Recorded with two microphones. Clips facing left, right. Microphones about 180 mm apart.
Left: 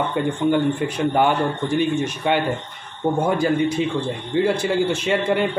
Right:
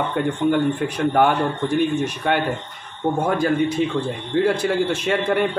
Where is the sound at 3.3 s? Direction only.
Centre (ahead or behind).